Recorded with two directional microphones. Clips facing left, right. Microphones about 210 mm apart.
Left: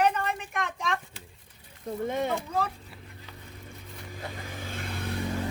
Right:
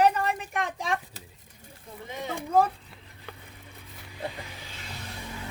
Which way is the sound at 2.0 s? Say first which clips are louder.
Left 8 dB; 55° left (ahead or behind).